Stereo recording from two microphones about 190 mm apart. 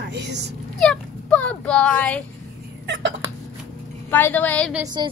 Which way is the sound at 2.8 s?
75° right (ahead or behind).